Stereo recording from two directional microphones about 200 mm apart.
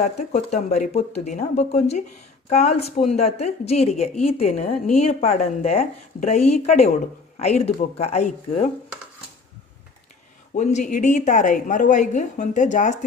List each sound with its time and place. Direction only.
0.0 s a woman's voice: 35° left (ahead or behind)
10.5 s a woman's voice: 35° left (ahead or behind)